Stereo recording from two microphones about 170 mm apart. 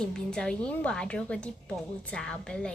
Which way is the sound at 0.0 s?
5° left (ahead or behind).